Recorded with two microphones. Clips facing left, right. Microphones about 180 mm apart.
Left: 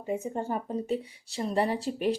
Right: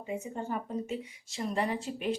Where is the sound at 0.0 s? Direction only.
40° left (ahead or behind).